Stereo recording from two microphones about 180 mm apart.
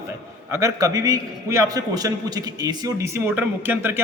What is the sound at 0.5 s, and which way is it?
A man's voice, 20° right (ahead or behind).